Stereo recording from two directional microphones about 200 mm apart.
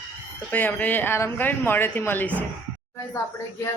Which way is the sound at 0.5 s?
10° left (ahead or behind).